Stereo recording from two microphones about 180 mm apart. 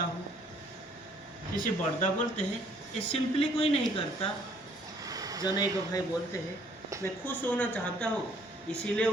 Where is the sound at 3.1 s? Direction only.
30° left (ahead or behind).